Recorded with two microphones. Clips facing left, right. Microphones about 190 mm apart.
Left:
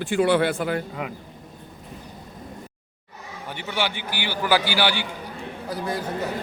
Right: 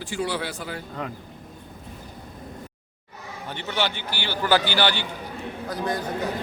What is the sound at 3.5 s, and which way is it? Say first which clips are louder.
A man's voice: even; 10° left (ahead or behind).